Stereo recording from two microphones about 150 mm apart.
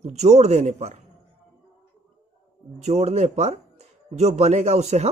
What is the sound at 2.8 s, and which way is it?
Speech, 45° right (ahead or behind).